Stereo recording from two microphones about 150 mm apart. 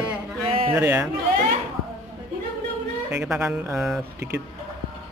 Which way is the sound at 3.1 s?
10° right (ahead or behind).